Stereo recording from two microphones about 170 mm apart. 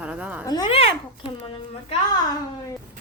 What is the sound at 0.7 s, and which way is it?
A child's voice, 35° left (ahead or behind).